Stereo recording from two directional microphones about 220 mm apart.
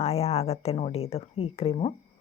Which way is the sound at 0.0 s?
25° left (ahead or behind).